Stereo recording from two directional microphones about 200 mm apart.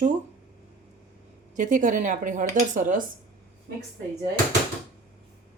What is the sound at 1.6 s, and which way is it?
Speech, 40° right (ahead or behind).